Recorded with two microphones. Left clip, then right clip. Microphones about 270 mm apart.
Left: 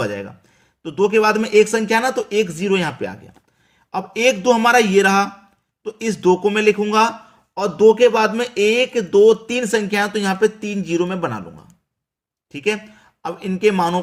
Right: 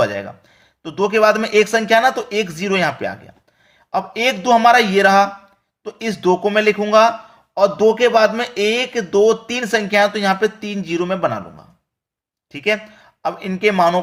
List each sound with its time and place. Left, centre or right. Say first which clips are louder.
0.0 s speech: right 5 dB; centre